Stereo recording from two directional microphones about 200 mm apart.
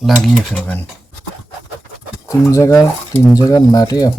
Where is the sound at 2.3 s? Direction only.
15° left (ahead or behind).